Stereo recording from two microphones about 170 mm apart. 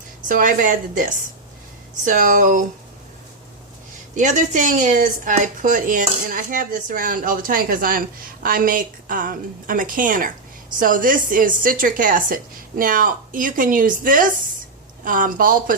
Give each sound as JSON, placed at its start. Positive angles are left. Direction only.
{"t": 0.3, "sound": "speech", "side_deg": -55}
{"t": 4.1, "sound": "speech", "side_deg": -45}